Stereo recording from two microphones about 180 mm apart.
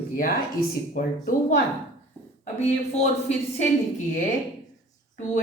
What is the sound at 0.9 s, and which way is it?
Speech, 45° left (ahead or behind).